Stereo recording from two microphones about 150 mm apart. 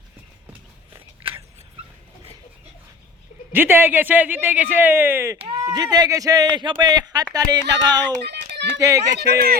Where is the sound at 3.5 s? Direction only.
15° right (ahead or behind).